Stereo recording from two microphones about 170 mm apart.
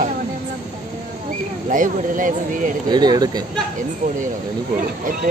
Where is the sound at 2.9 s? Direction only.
25° right (ahead or behind).